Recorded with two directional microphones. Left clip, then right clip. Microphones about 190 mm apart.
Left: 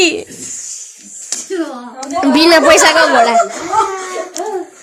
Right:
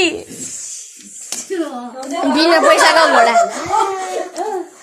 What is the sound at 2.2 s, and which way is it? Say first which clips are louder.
Speech: left 3 dB; 30° left (ahead or behind).